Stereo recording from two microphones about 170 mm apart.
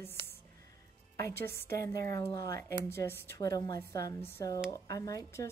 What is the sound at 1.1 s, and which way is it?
A woman's voice, 15° left (ahead or behind).